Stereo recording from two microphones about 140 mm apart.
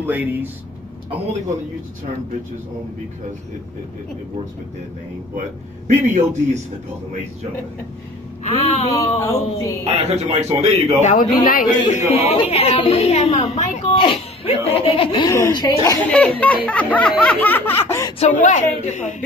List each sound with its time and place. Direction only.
0.0 s speech: 15° right (ahead or behind)
5.9 s a man's voice: 55° right (ahead or behind)
8.5 s a woman's voice: 45° left (ahead or behind)
9.2 s a woman's voice: 20° left (ahead or behind)
9.9 s a man's voice: 45° right (ahead or behind)
11.0 s a woman's voice: 60° left (ahead or behind)
11.4 s a man's voice: 80° left
12.1 s a woman's voice: 45° left (ahead or behind)
15.2 s a woman's voice: 25° left (ahead or behind)
16.0 s snicker: 10° left (ahead or behind)
18.2 s a woman's voice: 55° left (ahead or behind)